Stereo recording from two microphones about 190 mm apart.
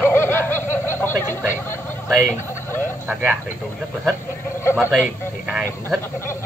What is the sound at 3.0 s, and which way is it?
Speech, 10° right (ahead or behind).